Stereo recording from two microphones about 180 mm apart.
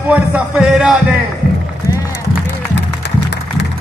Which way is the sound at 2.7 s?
75° left (ahead or behind).